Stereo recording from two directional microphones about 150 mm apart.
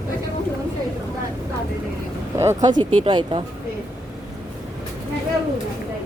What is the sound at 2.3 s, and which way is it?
Speech, 25° right (ahead or behind).